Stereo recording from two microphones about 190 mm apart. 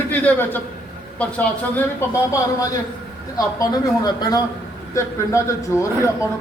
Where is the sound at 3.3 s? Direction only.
20° left (ahead or behind).